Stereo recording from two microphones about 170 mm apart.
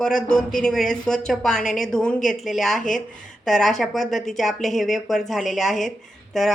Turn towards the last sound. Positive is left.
turn(degrees=0)  # may be behind; listen again after turning